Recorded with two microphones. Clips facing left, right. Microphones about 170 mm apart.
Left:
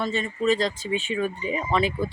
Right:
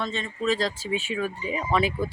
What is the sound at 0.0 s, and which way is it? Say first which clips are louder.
Speech: left 3 dB; 5° left (ahead or behind).